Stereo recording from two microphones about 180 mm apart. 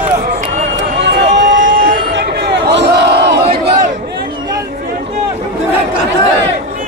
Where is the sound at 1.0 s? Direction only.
70° right (ahead or behind); by 1.8 s 90° right.